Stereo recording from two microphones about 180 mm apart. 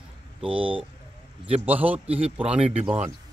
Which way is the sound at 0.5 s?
30° right (ahead or behind).